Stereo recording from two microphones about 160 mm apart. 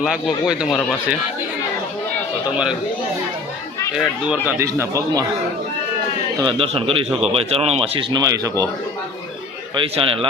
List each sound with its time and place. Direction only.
0.0 s speech: 5° right (ahead or behind)
3.9 s speech: 5° right (ahead or behind)
4.5 s speech: 20° right (ahead or behind)
6.4 s speech: 30° right (ahead or behind)
9.7 s speech: 35° right (ahead or behind)